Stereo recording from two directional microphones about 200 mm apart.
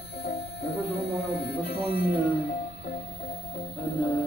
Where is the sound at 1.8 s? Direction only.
50° left (ahead or behind).